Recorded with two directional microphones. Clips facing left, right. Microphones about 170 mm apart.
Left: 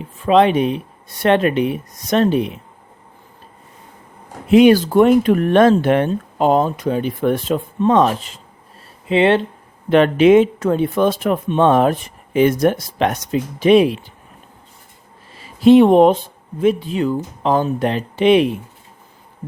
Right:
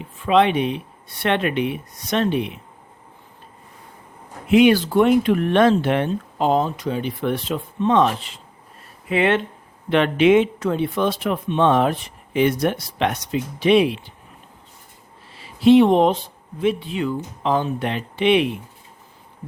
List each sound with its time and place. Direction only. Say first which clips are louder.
0.2 s speech: left 4 dB; 40° left (ahead or behind)
4.4 s speech: left 4 dB; 40° left (ahead or behind)
9.0 s speech: left 5 dB; 30° left (ahead or behind)
15.4 s speech: left 3 dB; 45° left (ahead or behind)